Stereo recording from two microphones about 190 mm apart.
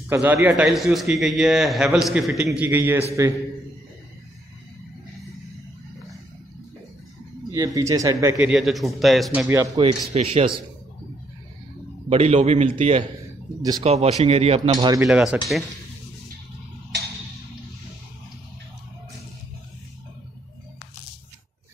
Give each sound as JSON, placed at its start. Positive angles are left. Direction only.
{"t": 0.1, "sound": "a man's voice", "side_deg": -10}
{"t": 7.5, "sound": "speech", "side_deg": -20}
{"t": 8.4, "sound": "a man's voice", "side_deg": -5}
{"t": 9.8, "sound": "speech", "side_deg": -30}
{"t": 12.1, "sound": "speech", "side_deg": -35}
{"t": 13.6, "sound": "speech", "side_deg": -20}
{"t": 13.8, "sound": "speech", "side_deg": -35}
{"t": 15.0, "sound": "a man's voice", "side_deg": -5}